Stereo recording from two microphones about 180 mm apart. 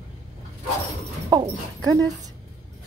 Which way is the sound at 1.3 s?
20° right (ahead or behind).